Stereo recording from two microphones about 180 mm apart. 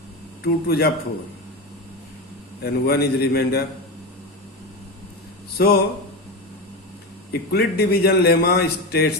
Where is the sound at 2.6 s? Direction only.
60° left (ahead or behind).